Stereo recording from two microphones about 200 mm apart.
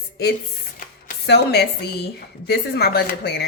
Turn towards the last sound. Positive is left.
turn(degrees=55)  # may be behind; listen again after turning